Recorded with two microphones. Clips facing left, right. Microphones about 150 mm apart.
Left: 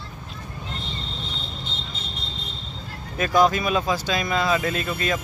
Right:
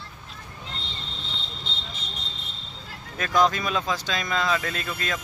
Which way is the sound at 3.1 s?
10° left (ahead or behind).